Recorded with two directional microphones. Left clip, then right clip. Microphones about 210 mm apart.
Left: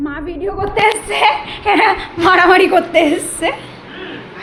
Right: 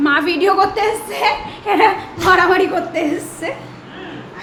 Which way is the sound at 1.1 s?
25° left (ahead or behind).